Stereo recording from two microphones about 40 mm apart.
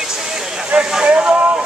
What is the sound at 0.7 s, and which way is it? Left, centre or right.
Vehicle, right.